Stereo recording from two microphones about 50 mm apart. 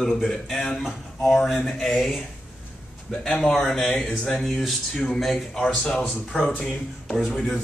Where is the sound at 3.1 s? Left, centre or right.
Centre.